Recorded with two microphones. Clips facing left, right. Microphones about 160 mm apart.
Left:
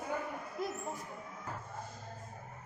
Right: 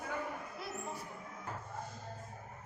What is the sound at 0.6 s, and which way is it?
Music, 45° left (ahead or behind).